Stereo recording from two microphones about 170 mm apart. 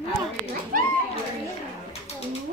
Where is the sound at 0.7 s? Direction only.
55° right (ahead or behind).